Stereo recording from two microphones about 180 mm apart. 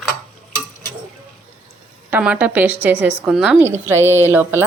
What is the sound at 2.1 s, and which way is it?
A woman's voice, 10° right (ahead or behind).